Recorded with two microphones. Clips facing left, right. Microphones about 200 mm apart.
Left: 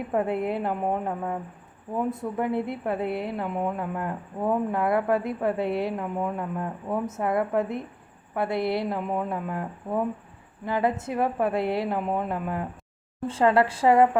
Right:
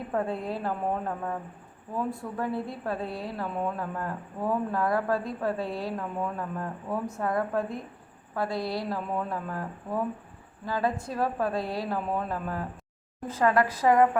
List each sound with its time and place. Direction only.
0.1 s a woman's voice: 20° left (ahead or behind)